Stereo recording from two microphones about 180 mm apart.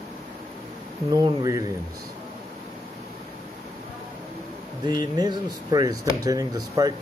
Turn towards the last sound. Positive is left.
turn(degrees=-20)  # may be behind; listen again after turning